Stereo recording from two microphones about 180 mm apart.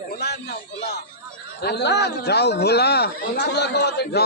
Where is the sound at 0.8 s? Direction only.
65° left (ahead or behind).